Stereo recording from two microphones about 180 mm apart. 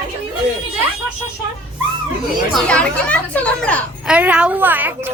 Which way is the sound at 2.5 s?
5° left (ahead or behind).